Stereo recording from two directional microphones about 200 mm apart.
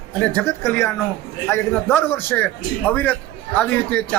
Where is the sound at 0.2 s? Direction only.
10° left (ahead or behind).